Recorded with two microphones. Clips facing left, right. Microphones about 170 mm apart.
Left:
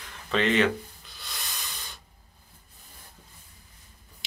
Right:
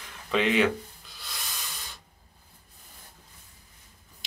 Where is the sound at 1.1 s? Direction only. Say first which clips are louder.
Even; centre (ahead or behind).